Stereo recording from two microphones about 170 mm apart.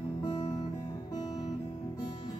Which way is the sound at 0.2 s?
25° left (ahead or behind).